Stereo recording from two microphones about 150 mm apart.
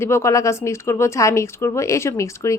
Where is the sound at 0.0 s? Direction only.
20° left (ahead or behind).